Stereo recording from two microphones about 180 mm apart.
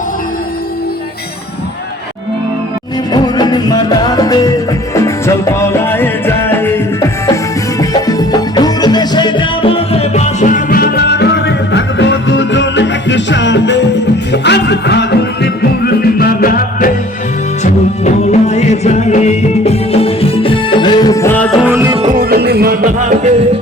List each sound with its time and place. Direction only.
3.1 s music: 25° left (ahead or behind); by 16.9 s 55° left (ahead or behind)
17.6 s music: 40° left (ahead or behind); by 21.6 s 10° left (ahead or behind)
21.6 s music: 10° right (ahead or behind)
21.9 s music: 40° right (ahead or behind)
22.2 s music: 60° right (ahead or behind); by 23.3 s 45° right (ahead or behind)